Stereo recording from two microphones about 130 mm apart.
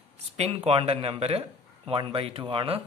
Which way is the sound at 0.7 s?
45° right (ahead or behind).